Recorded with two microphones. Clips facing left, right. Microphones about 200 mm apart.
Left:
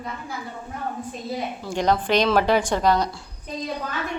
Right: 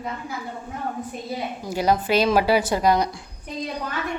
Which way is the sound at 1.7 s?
10° right (ahead or behind).